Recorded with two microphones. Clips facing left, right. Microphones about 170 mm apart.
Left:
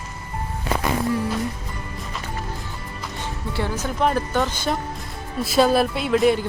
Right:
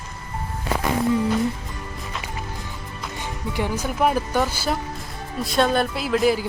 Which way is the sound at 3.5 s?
15° right (ahead or behind).